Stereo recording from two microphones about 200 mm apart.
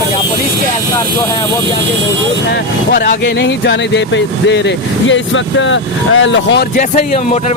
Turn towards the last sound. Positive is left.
turn(degrees=65)  # may be behind; listen again after turning